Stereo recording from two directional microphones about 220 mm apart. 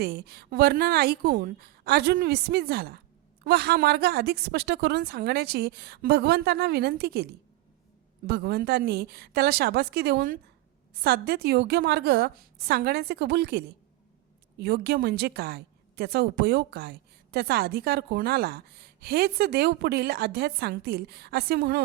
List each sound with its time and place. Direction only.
0.0 s a woman's voice: 45° right (ahead or behind)
8.3 s a woman's voice: 45° right (ahead or behind)